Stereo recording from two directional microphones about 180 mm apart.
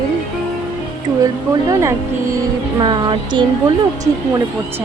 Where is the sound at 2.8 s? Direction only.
25° right (ahead or behind).